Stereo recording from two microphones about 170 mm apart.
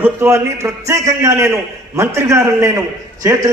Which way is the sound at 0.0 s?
15° right (ahead or behind).